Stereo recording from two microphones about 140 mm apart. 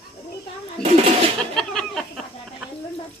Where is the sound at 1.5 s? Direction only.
5° left (ahead or behind).